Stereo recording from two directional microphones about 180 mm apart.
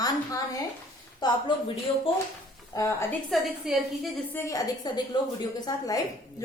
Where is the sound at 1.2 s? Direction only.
25° left (ahead or behind).